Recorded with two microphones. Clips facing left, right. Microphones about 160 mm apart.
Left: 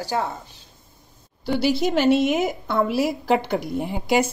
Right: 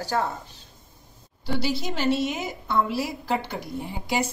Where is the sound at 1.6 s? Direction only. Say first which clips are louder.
Left 7 dB; 65° left (ahead or behind).